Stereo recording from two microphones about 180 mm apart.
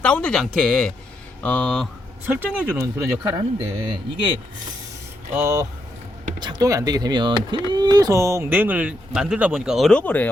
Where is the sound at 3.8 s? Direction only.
30° right (ahead or behind).